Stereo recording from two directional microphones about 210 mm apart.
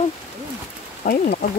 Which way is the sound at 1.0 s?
40° left (ahead or behind).